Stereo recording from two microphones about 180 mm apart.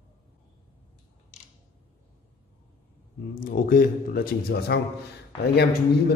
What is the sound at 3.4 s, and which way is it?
A man's voice, 50° left (ahead or behind).